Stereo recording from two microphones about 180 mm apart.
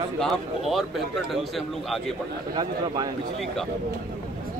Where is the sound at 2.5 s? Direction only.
20° right (ahead or behind).